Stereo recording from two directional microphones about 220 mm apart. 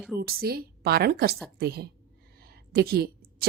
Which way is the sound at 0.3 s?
45° right (ahead or behind).